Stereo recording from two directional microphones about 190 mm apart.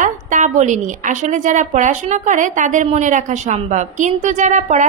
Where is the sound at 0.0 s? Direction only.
40° right (ahead or behind).